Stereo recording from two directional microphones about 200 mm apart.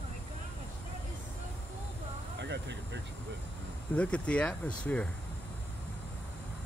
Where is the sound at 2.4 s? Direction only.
60° right (ahead or behind).